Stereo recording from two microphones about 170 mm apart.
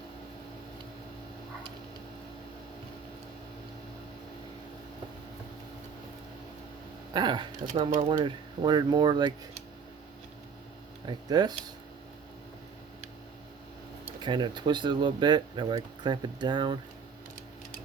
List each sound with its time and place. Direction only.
7.1 s speech: 25° right (ahead or behind)
7.7 s speech: 50° right (ahead or behind)
8.1 s speech: 25° right (ahead or behind)
11.0 s speech: 25° right (ahead or behind)
14.0 s speech: 25° right (ahead or behind)